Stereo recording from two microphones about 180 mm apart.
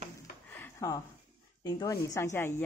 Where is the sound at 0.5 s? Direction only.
15° left (ahead or behind).